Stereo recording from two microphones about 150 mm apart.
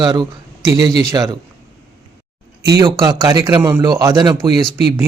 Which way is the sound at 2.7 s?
20° right (ahead or behind).